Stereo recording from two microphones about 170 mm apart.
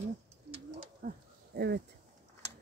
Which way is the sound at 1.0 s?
65° right (ahead or behind).